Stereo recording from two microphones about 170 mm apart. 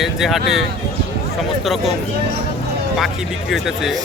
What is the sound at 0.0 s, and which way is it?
Speech, centre (ahead or behind).